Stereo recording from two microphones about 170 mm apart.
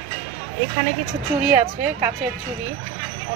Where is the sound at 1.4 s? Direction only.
15° right (ahead or behind).